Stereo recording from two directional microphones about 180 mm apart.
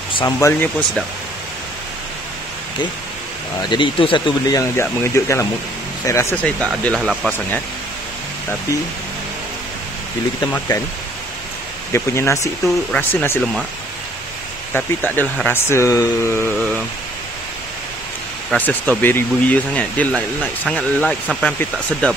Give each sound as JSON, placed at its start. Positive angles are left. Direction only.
{"t": 0.2, "sound": "speech", "side_deg": 15}
{"t": 3.6, "sound": "speech", "side_deg": 25}
{"t": 10.7, "sound": "speech", "side_deg": 20}
{"t": 11.9, "sound": "speech", "side_deg": 15}
{"t": 14.7, "sound": "speech", "side_deg": 10}
{"t": 18.5, "sound": "speech", "side_deg": 10}